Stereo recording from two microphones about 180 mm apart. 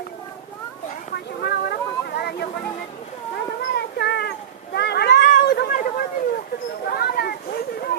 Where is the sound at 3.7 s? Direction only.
65° left (ahead or behind).